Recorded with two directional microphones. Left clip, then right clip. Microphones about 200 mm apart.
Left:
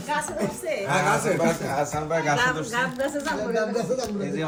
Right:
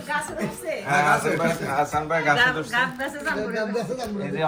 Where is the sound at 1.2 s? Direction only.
Centre (ahead or behind).